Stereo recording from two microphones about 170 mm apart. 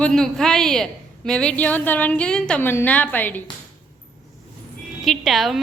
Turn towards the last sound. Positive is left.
turn(degrees=0)  # may be behind; listen again after turning